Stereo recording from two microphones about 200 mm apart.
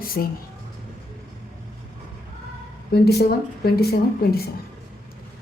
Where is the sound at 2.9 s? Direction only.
50° left (ahead or behind).